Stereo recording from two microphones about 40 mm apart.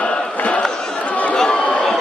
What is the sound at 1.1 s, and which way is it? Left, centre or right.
Chatter, left.